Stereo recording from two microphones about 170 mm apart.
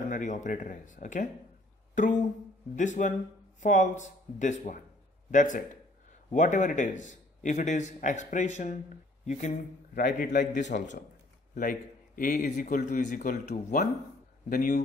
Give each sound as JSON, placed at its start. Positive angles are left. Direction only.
{"t": 0.1, "sound": "speech", "side_deg": 45}
{"t": 12.2, "sound": "speech", "side_deg": 55}